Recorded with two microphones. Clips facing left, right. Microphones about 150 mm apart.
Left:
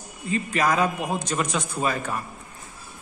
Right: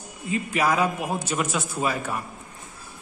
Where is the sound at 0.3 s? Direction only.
10° right (ahead or behind).